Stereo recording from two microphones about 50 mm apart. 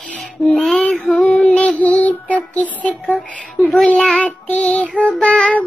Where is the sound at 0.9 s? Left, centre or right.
Centre.